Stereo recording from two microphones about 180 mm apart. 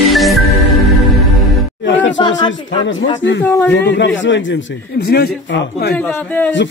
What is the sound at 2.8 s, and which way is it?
Speech, 90° left.